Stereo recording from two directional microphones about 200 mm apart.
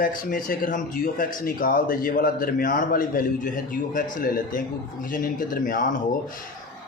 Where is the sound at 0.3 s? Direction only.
45° left (ahead or behind).